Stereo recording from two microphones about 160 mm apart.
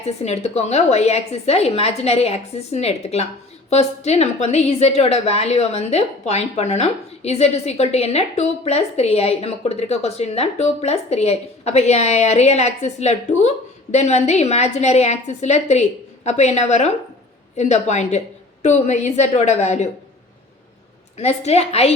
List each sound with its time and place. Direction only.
0.0 s a woman's voice: 40° left (ahead or behind)
21.2 s a woman's voice: 40° left (ahead or behind)